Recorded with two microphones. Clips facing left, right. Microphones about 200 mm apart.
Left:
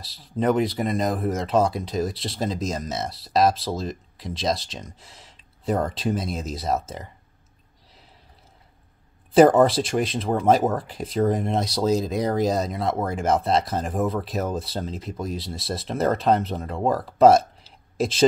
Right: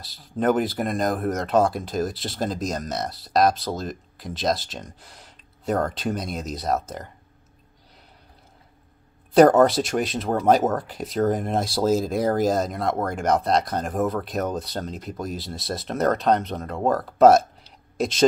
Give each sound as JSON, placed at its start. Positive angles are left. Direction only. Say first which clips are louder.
{"t": 0.0, "sound": "speech", "louder": "even", "side_deg": 0}
{"t": 9.3, "sound": "speech", "louder": "even", "side_deg": 0}